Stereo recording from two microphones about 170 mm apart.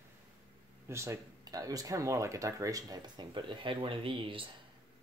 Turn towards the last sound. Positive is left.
turn(degrees=-30)  # may be behind; listen again after turning